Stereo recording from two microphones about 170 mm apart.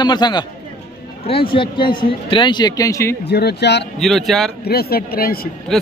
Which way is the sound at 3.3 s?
70° left (ahead or behind).